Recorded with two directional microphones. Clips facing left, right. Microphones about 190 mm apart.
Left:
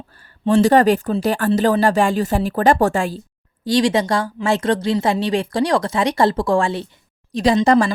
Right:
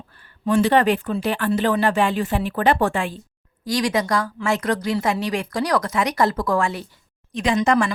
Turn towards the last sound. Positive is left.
turn(degrees=35)  # may be behind; listen again after turning